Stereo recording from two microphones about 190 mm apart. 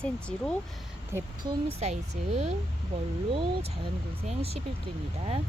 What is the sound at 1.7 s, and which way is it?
Speech, 35° right (ahead or behind).